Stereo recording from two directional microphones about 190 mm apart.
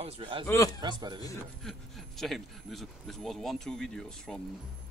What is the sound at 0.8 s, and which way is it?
Speech, 20° right (ahead or behind).